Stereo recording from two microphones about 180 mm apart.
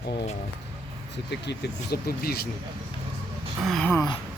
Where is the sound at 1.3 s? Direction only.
65° left (ahead or behind).